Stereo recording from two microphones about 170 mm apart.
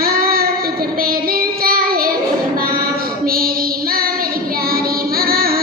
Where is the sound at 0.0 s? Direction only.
60° right (ahead or behind).